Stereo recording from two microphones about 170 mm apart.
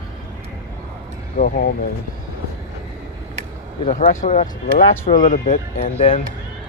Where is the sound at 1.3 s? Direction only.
55° left (ahead or behind).